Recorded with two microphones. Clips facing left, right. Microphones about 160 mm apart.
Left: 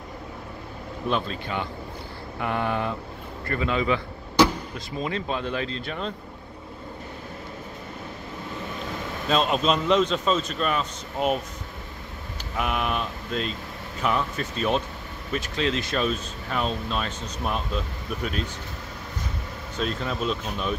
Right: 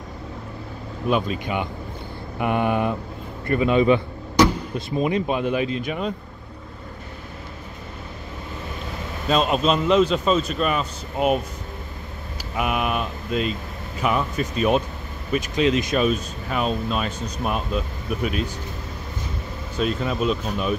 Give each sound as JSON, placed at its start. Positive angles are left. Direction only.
{"t": 1.0, "sound": "a man's voice", "side_deg": -10}
{"t": 9.3, "sound": "a man's voice", "side_deg": -5}
{"t": 12.5, "sound": "speech", "side_deg": -10}
{"t": 19.8, "sound": "speech", "side_deg": -5}